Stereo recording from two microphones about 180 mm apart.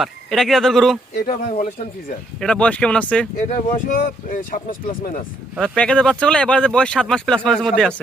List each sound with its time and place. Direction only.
0.0 s speech: centre (ahead or behind)
1.2 s speech: 60° left (ahead or behind)
1.6 s speech: 45° left (ahead or behind)
2.4 s speech: 5° left (ahead or behind)
3.5 s speech: 45° left (ahead or behind)
5.5 s speech: 5° left (ahead or behind)